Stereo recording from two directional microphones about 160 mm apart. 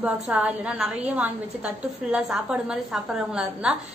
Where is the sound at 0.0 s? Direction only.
5° right (ahead or behind).